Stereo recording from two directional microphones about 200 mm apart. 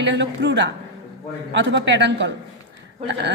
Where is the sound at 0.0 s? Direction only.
60° right (ahead or behind).